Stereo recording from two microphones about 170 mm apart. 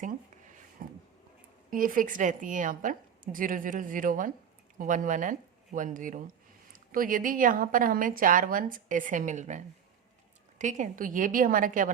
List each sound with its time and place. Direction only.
0.8 s a woman's voice: 55° right (ahead or behind)